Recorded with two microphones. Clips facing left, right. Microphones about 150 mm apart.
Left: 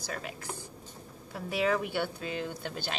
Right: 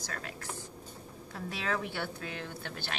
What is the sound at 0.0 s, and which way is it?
Speech, 15° left (ahead or behind).